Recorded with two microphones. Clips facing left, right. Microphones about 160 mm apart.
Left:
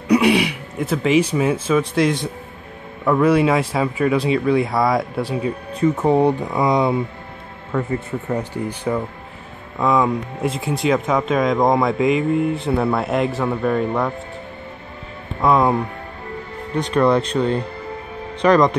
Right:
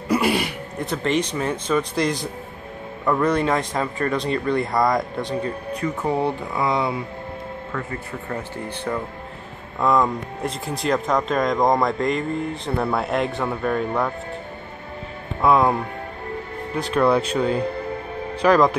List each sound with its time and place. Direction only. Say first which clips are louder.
0.1 s a man's voice: left 5 dB; centre (ahead or behind)
5.8 s speech: left 8 dB; 20° left (ahead or behind)
8.3 s a man's voice: left 6 dB; 15° left (ahead or behind)
15.4 s speech: left 1 dB; centre (ahead or behind)